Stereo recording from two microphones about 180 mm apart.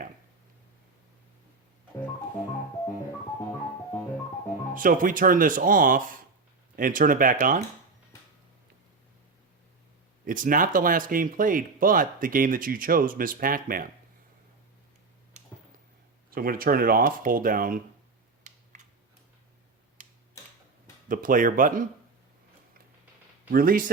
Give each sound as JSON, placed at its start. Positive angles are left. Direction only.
{"t": 4.7, "sound": "speech", "side_deg": -50}
{"t": 10.2, "sound": "speech", "side_deg": -50}
{"t": 16.3, "sound": "speech", "side_deg": -55}
{"t": 18.5, "sound": "a sound", "side_deg": -40}
{"t": 21.1, "sound": "speech", "side_deg": -50}
{"t": 23.5, "sound": "speech", "side_deg": -55}